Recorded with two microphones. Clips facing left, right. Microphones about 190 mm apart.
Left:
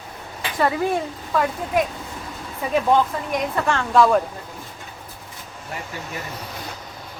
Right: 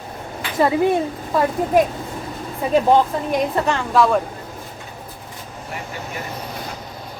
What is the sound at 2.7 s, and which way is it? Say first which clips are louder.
Speech: right 3 dB; 30° right (ahead or behind).